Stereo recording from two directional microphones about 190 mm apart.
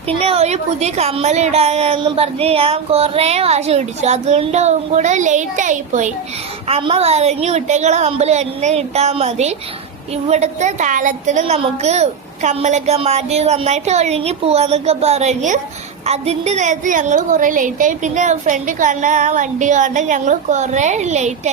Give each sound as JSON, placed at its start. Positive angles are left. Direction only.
{"t": 0.1, "sound": "a woman's voice", "side_deg": -30}
{"t": 6.7, "sound": "a woman's voice", "side_deg": -30}